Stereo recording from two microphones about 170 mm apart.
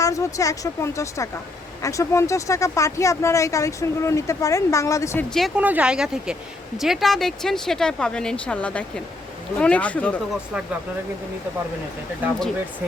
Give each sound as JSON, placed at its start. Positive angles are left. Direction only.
{"t": 0.0, "sound": "speech", "side_deg": 20}
{"t": 5.3, "sound": "speech", "side_deg": 0}